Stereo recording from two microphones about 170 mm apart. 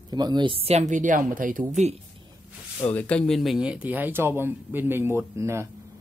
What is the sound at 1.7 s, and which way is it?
Speech, 40° right (ahead or behind).